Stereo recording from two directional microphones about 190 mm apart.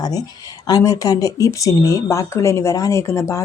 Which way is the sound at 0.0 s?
20° left (ahead or behind).